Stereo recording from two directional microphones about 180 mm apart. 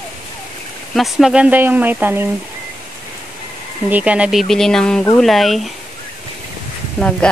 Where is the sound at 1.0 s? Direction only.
Centre (ahead or behind).